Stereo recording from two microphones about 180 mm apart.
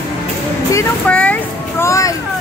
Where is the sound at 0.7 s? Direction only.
10° left (ahead or behind).